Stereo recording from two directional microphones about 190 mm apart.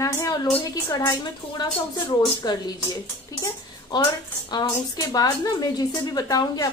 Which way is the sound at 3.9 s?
25° left (ahead or behind).